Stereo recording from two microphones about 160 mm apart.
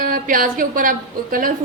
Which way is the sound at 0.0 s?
60° right (ahead or behind).